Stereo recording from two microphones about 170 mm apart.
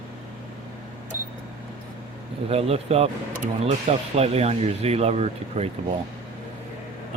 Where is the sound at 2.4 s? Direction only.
35° right (ahead or behind).